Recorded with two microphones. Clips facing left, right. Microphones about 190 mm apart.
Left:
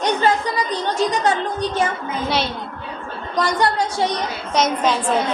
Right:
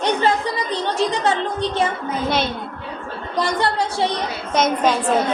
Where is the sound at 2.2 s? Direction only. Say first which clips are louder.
Right 1 dB; 50° right (ahead or behind).